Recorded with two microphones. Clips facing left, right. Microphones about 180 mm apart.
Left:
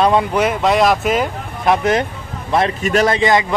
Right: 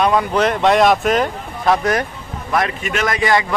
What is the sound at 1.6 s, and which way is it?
A man's voice, 25° left (ahead or behind).